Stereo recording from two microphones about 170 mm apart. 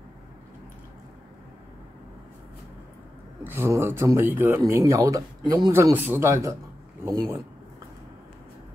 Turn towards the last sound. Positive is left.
turn(degrees=-15)  # may be behind; listen again after turning